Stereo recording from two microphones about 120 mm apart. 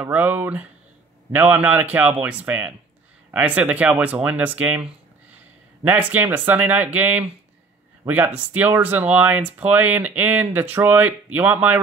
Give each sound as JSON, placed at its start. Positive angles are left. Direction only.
{"t": 0.0, "sound": "speech", "side_deg": -15}